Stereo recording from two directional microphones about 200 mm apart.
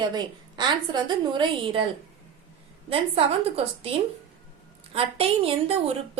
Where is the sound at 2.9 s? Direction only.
30° right (ahead or behind).